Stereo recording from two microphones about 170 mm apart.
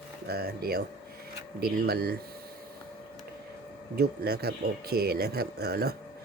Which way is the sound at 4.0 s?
65° right (ahead or behind).